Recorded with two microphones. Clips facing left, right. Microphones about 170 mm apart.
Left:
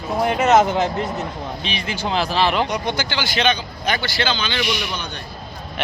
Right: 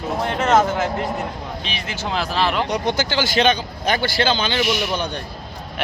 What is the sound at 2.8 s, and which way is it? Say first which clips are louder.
A man's voice: right 3 dB; 40° right (ahead or behind).